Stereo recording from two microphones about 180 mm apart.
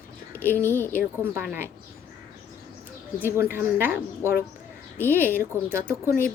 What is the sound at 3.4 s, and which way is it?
A woman's voice, 15° right (ahead or behind).